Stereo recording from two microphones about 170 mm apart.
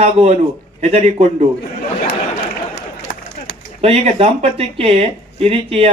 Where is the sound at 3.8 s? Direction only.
35° right (ahead or behind).